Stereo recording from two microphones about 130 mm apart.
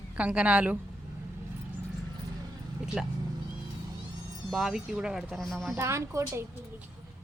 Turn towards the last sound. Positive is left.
turn(degrees=-20)  # may be behind; listen again after turning